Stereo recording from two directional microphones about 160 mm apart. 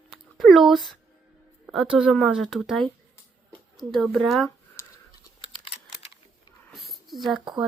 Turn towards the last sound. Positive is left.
turn(degrees=0)  # may be behind; listen again after turning